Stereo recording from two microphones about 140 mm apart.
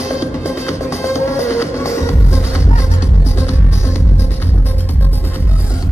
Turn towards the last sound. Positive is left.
turn(degrees=20)  # may be behind; listen again after turning